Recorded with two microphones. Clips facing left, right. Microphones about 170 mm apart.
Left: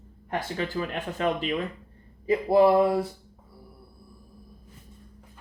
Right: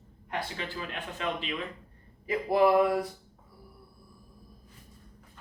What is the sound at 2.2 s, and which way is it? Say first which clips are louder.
Speech: left 5 dB; 30° left (ahead or behind).